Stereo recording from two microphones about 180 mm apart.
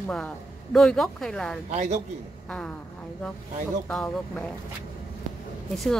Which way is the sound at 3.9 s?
5° left (ahead or behind).